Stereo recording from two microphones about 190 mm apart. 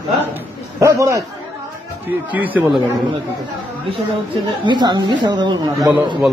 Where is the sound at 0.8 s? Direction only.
15° right (ahead or behind).